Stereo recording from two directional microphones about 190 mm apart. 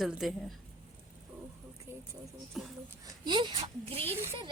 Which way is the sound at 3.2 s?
25° right (ahead or behind).